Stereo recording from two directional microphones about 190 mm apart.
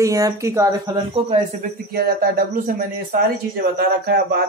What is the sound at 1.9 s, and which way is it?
Speech, 50° right (ahead or behind).